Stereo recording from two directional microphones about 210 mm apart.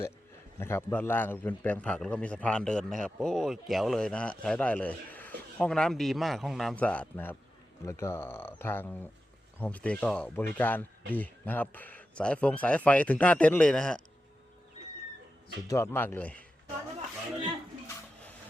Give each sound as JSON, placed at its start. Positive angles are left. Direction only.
{"t": 0.6, "sound": "a man's voice", "side_deg": 10}
{"t": 15.6, "sound": "speech", "side_deg": 15}